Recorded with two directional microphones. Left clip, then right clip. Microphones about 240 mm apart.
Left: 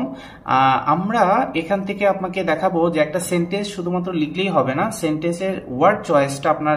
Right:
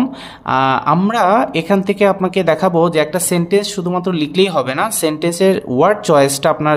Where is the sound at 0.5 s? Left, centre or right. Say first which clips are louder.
Right 2 dB; right.